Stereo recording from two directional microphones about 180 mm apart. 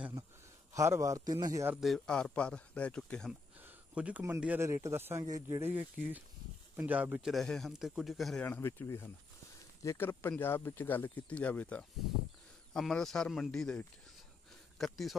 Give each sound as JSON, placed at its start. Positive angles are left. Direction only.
{"t": 0.7, "sound": "a man's voice", "side_deg": -15}
{"t": 1.8, "sound": "speech", "side_deg": 0}
{"t": 3.6, "sound": "a man's voice", "side_deg": -5}